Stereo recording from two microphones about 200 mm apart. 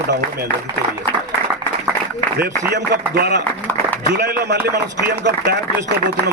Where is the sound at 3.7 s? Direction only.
10° left (ahead or behind).